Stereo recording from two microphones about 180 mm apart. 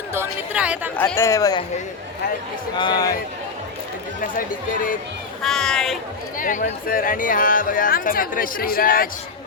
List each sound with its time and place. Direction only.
0.1 s speech: 10° right (ahead or behind)
0.9 s speech: 10° left (ahead or behind)
2.7 s speech: 25° left (ahead or behind)
4.2 s speech: 50° left (ahead or behind)
5.4 s speech: 5° left (ahead or behind)
6.4 s speech: 45° left (ahead or behind)